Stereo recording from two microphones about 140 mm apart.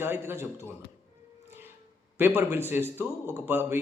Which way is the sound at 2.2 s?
15° right (ahead or behind).